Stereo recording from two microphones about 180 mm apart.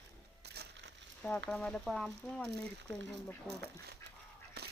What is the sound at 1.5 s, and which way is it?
Speech, 5° left (ahead or behind).